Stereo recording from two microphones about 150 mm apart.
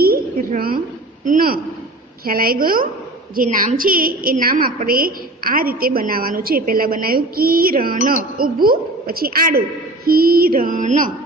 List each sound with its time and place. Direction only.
0.0 s a sound: 80° right
1.2 s a woman's voice: 70° right (ahead or behind)
3.3 s a woman's voice: 60° right (ahead or behind)
8.6 s a woman's voice: 85° right; by 11.1 s 60° right (ahead or behind)